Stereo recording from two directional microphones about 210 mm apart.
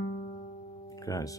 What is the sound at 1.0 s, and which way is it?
Music, 15° left (ahead or behind).